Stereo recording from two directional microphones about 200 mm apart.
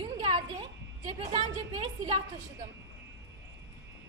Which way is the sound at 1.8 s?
30° right (ahead or behind).